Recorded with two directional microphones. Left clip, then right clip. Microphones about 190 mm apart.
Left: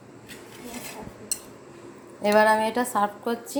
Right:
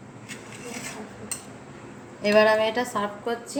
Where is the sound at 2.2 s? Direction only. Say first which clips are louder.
Even; 25° left (ahead or behind).